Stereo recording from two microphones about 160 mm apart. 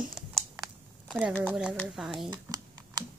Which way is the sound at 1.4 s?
5° right (ahead or behind).